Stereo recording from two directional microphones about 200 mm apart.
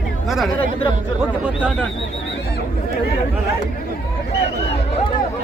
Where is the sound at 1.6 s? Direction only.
5° left (ahead or behind).